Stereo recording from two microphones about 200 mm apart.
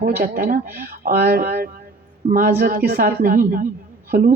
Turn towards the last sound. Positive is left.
turn(degrees=-45)  # may be behind; listen again after turning